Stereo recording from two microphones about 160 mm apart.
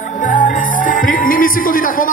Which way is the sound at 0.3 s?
55° left (ahead or behind).